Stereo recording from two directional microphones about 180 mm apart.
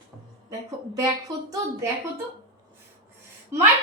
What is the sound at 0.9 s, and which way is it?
Speech, 20° right (ahead or behind).